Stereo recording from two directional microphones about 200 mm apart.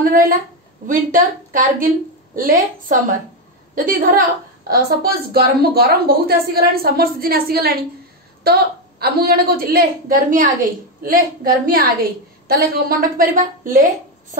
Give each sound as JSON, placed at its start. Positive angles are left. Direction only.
{"t": 0.0, "sound": "a woman's voice", "side_deg": -45}